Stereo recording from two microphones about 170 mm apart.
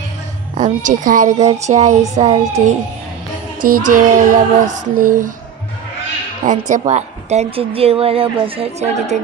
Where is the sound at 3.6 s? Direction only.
50° right (ahead or behind).